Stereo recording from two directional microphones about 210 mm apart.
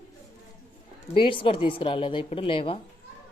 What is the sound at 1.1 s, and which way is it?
Speech, 25° left (ahead or behind).